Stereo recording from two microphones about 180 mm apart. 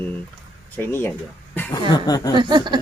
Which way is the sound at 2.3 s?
25° right (ahead or behind).